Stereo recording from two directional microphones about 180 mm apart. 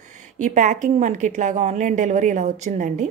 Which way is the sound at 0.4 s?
40° right (ahead or behind).